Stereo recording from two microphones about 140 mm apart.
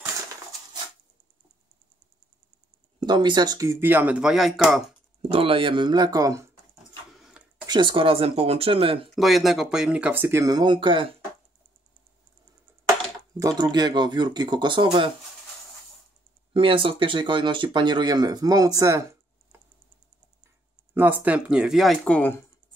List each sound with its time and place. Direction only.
3.0 s speech: 30° right (ahead or behind); by 4.8 s 5° right (ahead or behind)
5.3 s speech: 40° right (ahead or behind); by 6.4 s 25° right (ahead or behind)
7.2 s a sound: 5° right (ahead or behind)
7.6 s speech: 35° right (ahead or behind)
9.1 s speech: centre (ahead or behind); by 10.5 s 15° right (ahead or behind)
10.5 s speech: 35° right (ahead or behind)
13.4 s speech: 30° right (ahead or behind)
16.5 s speech: 40° right (ahead or behind); by 19.0 s 20° right (ahead or behind)
20.9 s speech: 15° right (ahead or behind); by 22.3 s 5° left (ahead or behind)